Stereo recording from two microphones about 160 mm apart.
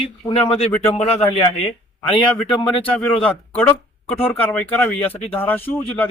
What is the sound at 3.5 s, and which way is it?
A man's voice, 10° left (ahead or behind).